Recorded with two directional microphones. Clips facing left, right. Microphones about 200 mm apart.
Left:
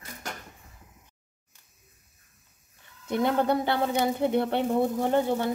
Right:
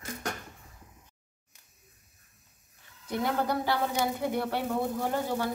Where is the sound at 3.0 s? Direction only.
25° left (ahead or behind).